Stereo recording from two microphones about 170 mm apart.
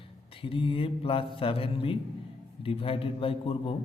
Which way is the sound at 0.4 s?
30° left (ahead or behind).